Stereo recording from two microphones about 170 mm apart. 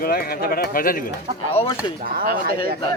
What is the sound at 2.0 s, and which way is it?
Speech, 60° right (ahead or behind).